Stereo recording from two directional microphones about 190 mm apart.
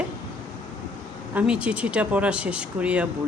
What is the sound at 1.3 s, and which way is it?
Speech, 5° right (ahead or behind).